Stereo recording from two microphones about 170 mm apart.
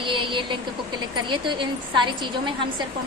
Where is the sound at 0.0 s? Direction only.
30° right (ahead or behind).